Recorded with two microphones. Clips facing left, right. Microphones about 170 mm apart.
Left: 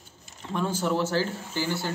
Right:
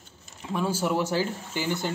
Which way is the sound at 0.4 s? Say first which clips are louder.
Right 1 dB; 10° right (ahead or behind).